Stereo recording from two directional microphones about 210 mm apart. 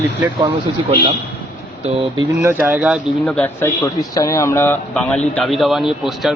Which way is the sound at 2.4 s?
5° right (ahead or behind).